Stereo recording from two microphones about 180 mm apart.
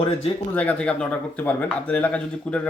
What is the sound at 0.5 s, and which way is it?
Speech, 5° left (ahead or behind).